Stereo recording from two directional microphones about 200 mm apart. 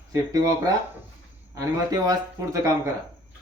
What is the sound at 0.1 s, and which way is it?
Speech, 15° right (ahead or behind).